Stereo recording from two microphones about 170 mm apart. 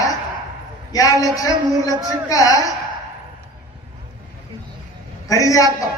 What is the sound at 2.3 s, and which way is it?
Speech, 20° left (ahead or behind).